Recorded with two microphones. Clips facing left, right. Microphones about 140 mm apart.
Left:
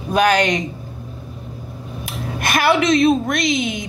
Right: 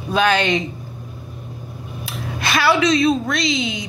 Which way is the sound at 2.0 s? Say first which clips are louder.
Left 1 dB; 50° left (ahead or behind).